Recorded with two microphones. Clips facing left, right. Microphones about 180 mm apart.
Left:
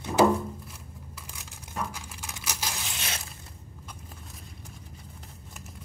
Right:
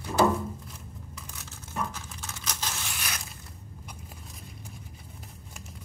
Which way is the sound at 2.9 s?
25° left (ahead or behind).